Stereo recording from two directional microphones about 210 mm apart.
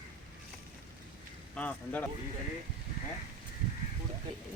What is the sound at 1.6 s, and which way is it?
Speech, 5° left (ahead or behind).